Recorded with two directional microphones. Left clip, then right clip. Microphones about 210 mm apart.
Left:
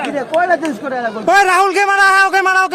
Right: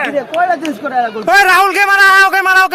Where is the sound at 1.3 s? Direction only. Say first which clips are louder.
Right 2 dB; centre (ahead or behind).